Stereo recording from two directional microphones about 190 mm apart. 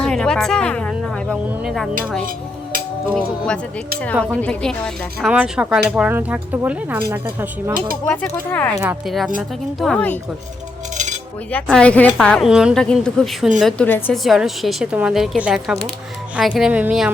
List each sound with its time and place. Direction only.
0.0 s speech: 5° left (ahead or behind)
3.2 s a woman's voice: 5° left (ahead or behind)
5.3 s speech: 5° right (ahead or behind)
8.0 s speech: 5° left (ahead or behind)
8.8 s a woman's voice: 5° right (ahead or behind)
10.9 s cutlery: 40° right (ahead or behind)
11.5 s a woman's voice: 5° left (ahead or behind)